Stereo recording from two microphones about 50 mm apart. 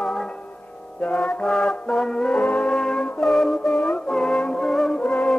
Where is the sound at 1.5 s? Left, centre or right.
Centre.